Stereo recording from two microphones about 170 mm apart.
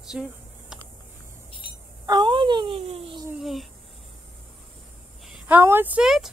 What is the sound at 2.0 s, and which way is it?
Speech, 30° right (ahead or behind).